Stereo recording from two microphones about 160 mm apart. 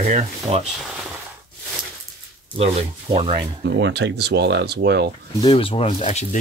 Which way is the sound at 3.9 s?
90° right.